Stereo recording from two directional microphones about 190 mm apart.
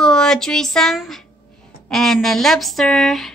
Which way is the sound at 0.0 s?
5° left (ahead or behind).